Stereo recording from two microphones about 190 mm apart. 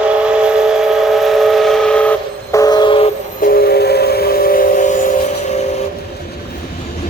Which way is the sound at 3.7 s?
55° left (ahead or behind).